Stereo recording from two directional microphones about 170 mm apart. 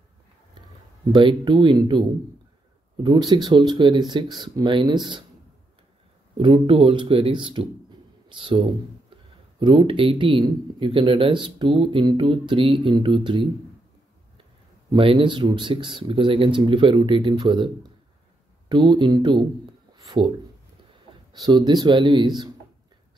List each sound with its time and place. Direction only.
1.1 s speech: 25° right (ahead or behind)
6.3 s speech: 30° right (ahead or behind)
14.9 s speech: 30° right (ahead or behind)
18.7 s speech: 25° right (ahead or behind)